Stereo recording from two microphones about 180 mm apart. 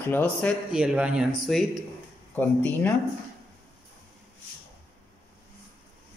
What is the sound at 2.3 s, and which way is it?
Speech, 10° left (ahead or behind).